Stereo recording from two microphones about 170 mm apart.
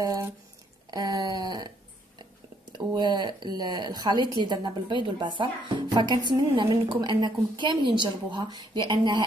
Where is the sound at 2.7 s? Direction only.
25° right (ahead or behind).